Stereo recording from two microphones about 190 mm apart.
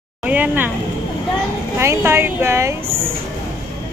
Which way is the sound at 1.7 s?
15° right (ahead or behind).